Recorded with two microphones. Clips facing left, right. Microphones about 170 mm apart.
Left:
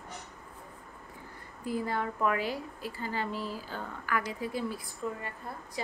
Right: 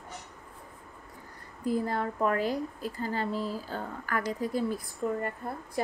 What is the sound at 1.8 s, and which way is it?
Speech, 40° right (ahead or behind).